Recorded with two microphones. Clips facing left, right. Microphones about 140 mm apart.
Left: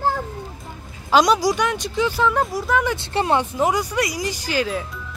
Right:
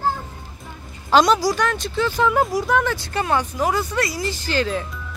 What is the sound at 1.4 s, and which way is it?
Speech, 15° left (ahead or behind).